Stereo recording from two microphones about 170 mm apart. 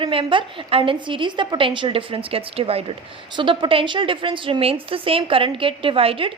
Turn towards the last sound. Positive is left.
turn(degrees=-30)  # may be behind; listen again after turning